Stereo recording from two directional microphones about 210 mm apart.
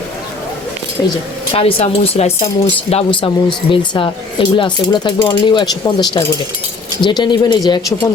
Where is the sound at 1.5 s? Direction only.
30° left (ahead or behind).